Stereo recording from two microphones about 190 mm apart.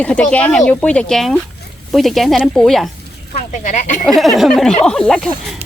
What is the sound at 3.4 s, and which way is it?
Speech, 40° left (ahead or behind).